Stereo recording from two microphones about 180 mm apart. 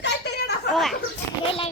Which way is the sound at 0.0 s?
65° left (ahead or behind).